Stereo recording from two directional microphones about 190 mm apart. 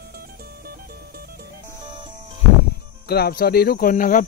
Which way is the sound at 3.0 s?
55° left (ahead or behind).